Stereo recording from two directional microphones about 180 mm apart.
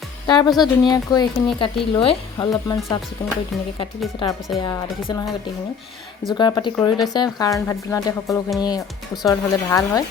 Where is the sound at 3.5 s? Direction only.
Centre (ahead or behind).